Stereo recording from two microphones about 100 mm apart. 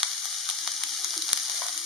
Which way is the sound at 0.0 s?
Centre (ahead or behind).